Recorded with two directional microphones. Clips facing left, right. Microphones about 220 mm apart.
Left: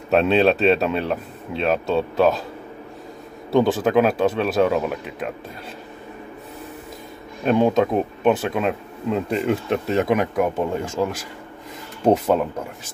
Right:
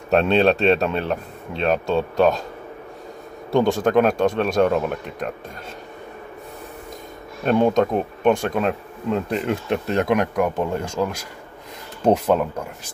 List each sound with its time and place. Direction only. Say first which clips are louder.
0.1 s speech: even; centre (ahead or behind)
3.5 s speech: even; 5° left (ahead or behind)
7.4 s speech: even; centre (ahead or behind)